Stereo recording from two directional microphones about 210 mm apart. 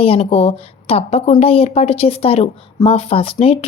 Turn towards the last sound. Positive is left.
turn(degrees=25)  # may be behind; listen again after turning